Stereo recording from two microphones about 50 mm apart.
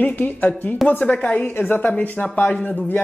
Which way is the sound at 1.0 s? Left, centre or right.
Left.